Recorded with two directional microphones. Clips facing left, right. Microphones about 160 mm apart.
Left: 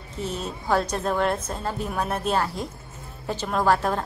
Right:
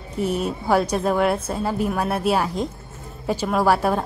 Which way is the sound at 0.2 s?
10° right (ahead or behind).